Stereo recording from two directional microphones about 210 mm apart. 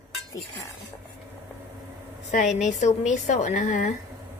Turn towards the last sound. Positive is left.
turn(degrees=35)  # may be behind; listen again after turning